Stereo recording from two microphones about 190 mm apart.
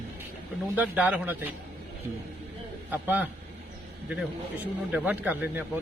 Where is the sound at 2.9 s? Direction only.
10° right (ahead or behind).